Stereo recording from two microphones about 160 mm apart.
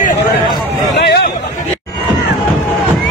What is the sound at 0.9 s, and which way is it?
Chatter, 90° left.